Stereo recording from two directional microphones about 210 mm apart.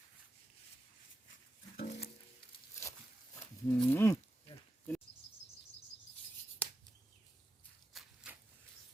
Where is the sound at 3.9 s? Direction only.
10° left (ahead or behind).